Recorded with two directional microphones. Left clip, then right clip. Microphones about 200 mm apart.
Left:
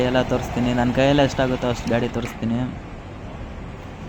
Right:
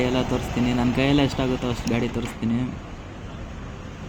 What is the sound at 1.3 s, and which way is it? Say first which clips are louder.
Speech: left 4 dB; 10° left (ahead or behind).